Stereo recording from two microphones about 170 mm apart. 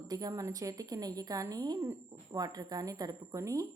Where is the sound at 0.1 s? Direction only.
20° right (ahead or behind).